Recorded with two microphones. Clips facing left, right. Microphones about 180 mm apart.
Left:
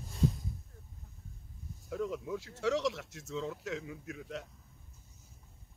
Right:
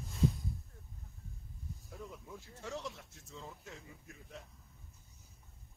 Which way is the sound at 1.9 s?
85° left.